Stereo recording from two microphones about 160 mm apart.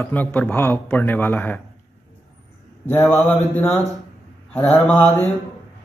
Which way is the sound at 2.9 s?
15° left (ahead or behind).